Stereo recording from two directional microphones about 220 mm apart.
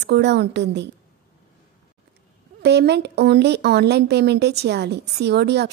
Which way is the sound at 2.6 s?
50° right (ahead or behind).